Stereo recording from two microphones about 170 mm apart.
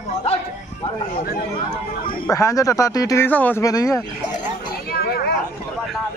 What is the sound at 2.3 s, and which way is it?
Speech, 20° left (ahead or behind).